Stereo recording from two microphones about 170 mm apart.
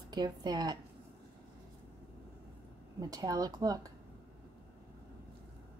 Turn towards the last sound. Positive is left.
turn(degrees=-20)  # may be behind; listen again after turning